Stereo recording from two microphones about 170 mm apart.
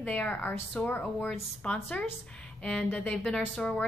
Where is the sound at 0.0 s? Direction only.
10° left (ahead or behind).